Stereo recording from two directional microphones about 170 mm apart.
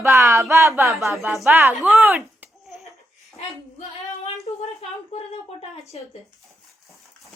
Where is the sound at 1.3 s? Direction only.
Centre (ahead or behind).